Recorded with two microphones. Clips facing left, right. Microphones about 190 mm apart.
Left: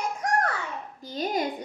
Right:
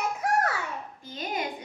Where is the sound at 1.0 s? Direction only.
35° left (ahead or behind).